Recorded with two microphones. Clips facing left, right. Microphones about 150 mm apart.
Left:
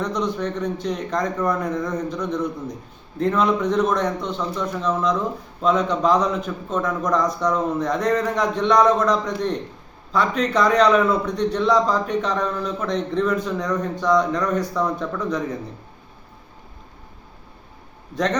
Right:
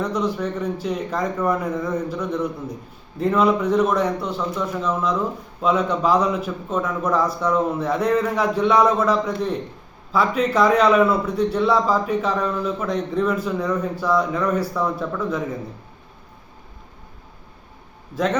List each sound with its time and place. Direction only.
0.0 s a man's voice: 10° right (ahead or behind)
18.1 s a man's voice: 5° right (ahead or behind)